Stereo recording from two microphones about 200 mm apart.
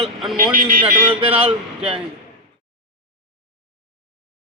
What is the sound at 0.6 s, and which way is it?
Speech, 45° right (ahead or behind).